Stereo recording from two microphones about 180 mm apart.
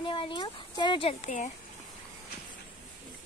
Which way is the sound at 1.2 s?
40° left (ahead or behind).